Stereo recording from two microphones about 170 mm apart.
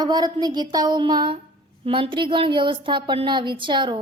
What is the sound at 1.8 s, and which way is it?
A woman's voice, 30° right (ahead or behind).